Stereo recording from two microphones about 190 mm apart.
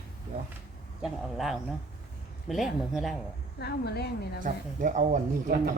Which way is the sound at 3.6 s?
60° left (ahead or behind).